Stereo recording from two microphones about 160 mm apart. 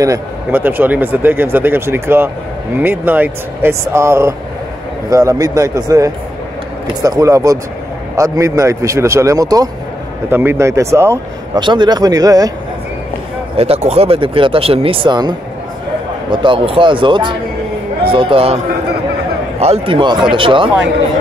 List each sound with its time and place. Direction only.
0.0 s speech: 15° right (ahead or behind)
11.6 s speech: 30° right (ahead or behind)
13.6 s speech: 40° right (ahead or behind)
19.6 s speech: 35° right (ahead or behind)